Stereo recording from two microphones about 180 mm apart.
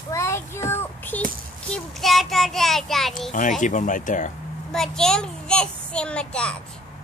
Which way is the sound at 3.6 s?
45° left (ahead or behind).